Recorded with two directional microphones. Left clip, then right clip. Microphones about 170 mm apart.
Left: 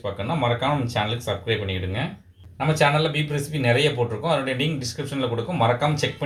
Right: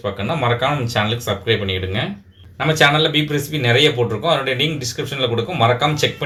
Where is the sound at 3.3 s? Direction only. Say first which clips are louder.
Right 5 dB; 45° right (ahead or behind).